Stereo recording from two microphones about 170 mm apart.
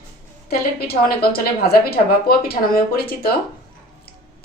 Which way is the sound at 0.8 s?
65° left (ahead or behind).